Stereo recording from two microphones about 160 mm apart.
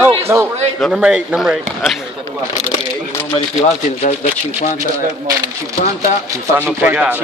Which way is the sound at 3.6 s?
45° left (ahead or behind).